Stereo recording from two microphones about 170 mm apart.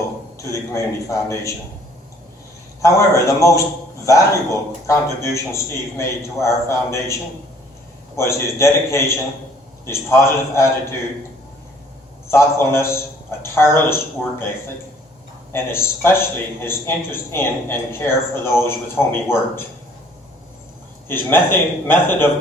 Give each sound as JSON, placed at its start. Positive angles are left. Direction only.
{"t": 0.3, "sound": "a man's voice", "side_deg": 20}
{"t": 2.8, "sound": "a man's voice", "side_deg": 20}
{"t": 4.9, "sound": "a man's voice", "side_deg": 15}
{"t": 12.3, "sound": "a man's voice", "side_deg": 15}
{"t": 15.5, "sound": "a man's voice", "side_deg": 15}
{"t": 21.1, "sound": "a man's voice", "side_deg": 10}